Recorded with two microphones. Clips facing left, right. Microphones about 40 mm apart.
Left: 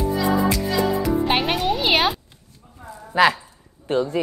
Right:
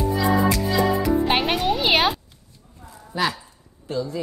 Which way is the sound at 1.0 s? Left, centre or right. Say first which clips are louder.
Even; centre.